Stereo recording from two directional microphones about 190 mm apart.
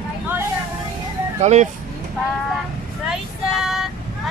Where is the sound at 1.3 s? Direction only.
35° right (ahead or behind).